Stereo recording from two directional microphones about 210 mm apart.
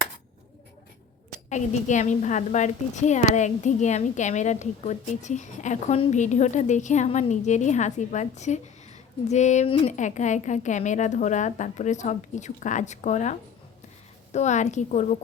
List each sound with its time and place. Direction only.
1.5 s a woman's voice: 35° left (ahead or behind)
14.3 s a woman's voice: 35° left (ahead or behind)